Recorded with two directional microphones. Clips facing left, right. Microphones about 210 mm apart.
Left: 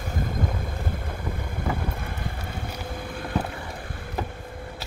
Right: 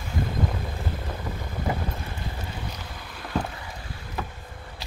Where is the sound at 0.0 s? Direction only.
50° left (ahead or behind).